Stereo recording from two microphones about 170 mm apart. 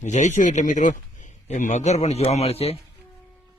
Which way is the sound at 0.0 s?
45° left (ahead or behind).